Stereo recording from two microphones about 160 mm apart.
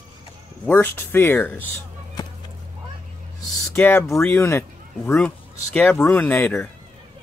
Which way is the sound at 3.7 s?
15° left (ahead or behind).